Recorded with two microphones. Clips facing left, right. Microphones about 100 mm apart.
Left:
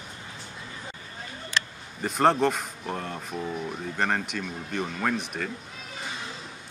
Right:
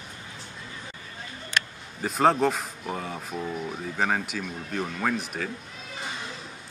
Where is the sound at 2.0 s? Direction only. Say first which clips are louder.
Even; centre (ahead or behind).